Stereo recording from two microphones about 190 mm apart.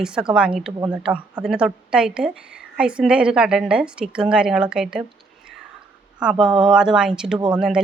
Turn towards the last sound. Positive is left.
turn(degrees=-5)  # may be behind; listen again after turning